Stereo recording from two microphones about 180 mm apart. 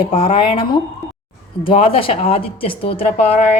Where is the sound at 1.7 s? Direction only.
30° left (ahead or behind).